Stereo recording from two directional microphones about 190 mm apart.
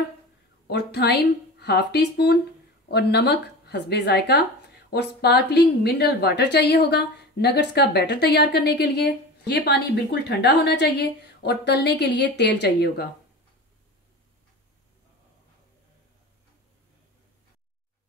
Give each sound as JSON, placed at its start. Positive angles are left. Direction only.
{"t": 0.7, "sound": "a woman's voice", "side_deg": 60}